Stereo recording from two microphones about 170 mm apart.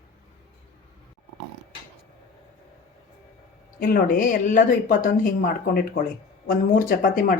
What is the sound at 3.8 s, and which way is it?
Speech, 55° left (ahead or behind).